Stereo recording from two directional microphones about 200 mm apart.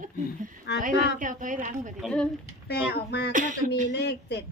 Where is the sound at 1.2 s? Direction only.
40° right (ahead or behind).